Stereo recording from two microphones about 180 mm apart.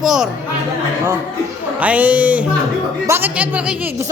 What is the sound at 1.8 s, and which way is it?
A woman's voice, 10° right (ahead or behind).